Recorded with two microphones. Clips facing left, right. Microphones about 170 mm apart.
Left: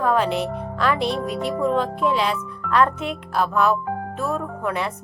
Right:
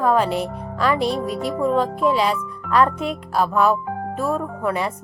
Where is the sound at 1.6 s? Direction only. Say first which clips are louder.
Right 2 dB; 10° right (ahead or behind).